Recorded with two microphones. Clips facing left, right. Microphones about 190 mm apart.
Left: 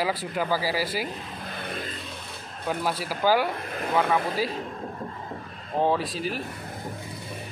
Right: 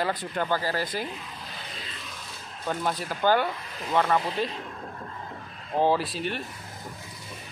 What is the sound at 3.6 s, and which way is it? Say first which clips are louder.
Speech: left 4 dB; 55° left (ahead or behind).